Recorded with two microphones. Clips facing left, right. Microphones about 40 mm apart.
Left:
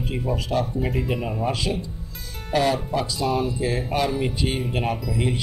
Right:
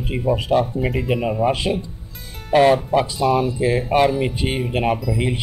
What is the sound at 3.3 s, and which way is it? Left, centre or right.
Speech, centre.